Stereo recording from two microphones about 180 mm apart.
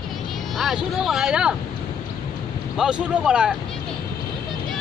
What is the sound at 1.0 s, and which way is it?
Speech, centre (ahead or behind).